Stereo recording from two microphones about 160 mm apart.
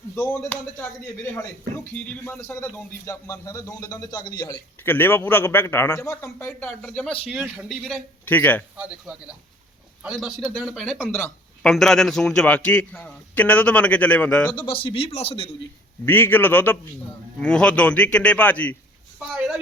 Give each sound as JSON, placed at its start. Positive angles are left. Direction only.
{"t": 0.2, "sound": "a man's voice", "side_deg": 15}
{"t": 2.0, "sound": "a man's voice", "side_deg": 15}
{"t": 4.8, "sound": "a man's voice", "side_deg": 15}
{"t": 6.5, "sound": "speech", "side_deg": 5}
{"t": 8.2, "sound": "a man's voice", "side_deg": 10}
{"t": 8.8, "sound": "speech", "side_deg": -5}
{"t": 11.0, "sound": "a man's voice", "side_deg": 15}
{"t": 11.6, "sound": "a man's voice", "side_deg": 0}
{"t": 14.7, "sound": "a man's voice", "side_deg": 35}
{"t": 16.0, "sound": "a man's voice", "side_deg": 15}
{"t": 19.3, "sound": "a sound", "side_deg": -5}